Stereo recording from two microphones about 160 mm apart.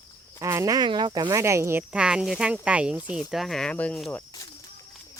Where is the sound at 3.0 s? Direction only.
30° left (ahead or behind).